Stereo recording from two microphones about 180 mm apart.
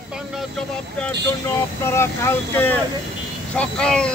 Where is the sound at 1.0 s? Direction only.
15° left (ahead or behind).